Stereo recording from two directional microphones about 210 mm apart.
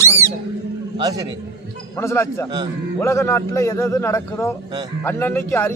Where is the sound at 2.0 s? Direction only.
15° left (ahead or behind).